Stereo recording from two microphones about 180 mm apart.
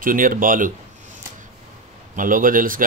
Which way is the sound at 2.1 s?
50° right (ahead or behind).